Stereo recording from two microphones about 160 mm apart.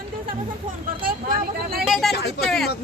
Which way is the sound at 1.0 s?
65° right (ahead or behind).